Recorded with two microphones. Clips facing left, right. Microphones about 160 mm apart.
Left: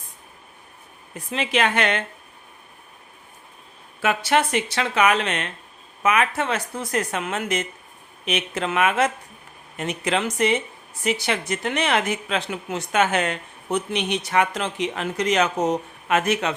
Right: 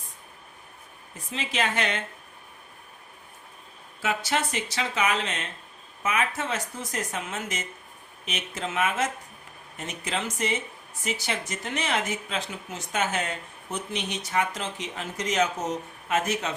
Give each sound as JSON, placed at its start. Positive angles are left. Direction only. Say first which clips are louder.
{"t": 1.1, "sound": "speech", "louder": "left 7 dB", "side_deg": 60}
{"t": 4.0, "sound": "a woman's voice", "louder": "left 7 dB", "side_deg": 65}